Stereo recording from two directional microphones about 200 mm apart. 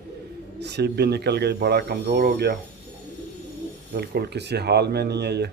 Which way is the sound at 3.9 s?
55° right (ahead or behind).